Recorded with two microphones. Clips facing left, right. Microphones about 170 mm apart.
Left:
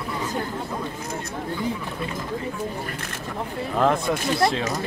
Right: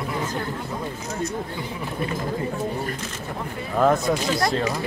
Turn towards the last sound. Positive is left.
turn(degrees=0)  # may be behind; listen again after turning